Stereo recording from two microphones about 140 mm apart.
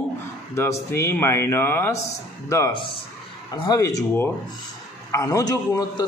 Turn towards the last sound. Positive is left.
turn(degrees=25)  # may be behind; listen again after turning